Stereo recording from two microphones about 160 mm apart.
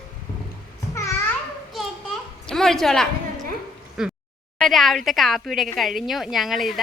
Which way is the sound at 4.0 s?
Centre (ahead or behind).